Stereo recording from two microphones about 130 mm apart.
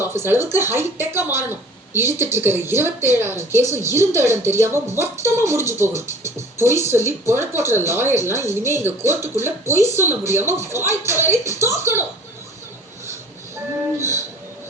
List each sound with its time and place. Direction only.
0.0 s speech: 20° right (ahead or behind)
14.0 s speech: 20° right (ahead or behind)